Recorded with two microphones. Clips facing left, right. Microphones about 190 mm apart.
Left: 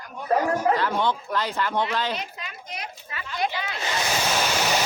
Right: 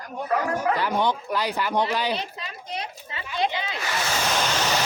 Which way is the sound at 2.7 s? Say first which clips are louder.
Right 4 dB; 25° right (ahead or behind).